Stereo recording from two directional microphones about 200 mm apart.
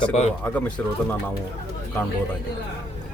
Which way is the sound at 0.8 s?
10° left (ahead or behind).